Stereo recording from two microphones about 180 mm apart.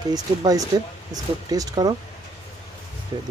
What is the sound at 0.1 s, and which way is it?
Speech, 20° right (ahead or behind).